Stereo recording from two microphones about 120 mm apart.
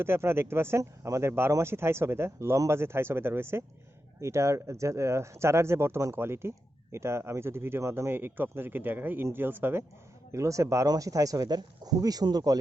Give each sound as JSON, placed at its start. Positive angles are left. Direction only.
{"t": 0.0, "sound": "speech", "side_deg": -20}